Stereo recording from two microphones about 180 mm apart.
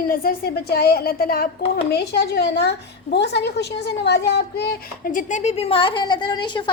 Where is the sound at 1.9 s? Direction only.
65° left (ahead or behind).